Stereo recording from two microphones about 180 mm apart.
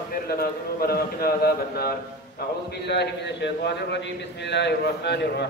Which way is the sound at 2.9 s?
70° left (ahead or behind).